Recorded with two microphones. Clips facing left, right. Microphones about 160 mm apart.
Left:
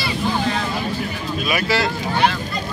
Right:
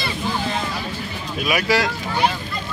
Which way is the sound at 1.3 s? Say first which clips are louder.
Right 1 dB; 10° right (ahead or behind).